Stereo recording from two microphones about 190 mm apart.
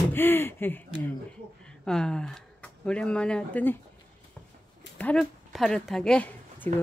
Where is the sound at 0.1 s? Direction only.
10° left (ahead or behind).